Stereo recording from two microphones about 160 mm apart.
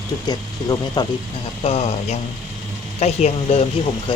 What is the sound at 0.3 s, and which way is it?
Speech, 25° left (ahead or behind).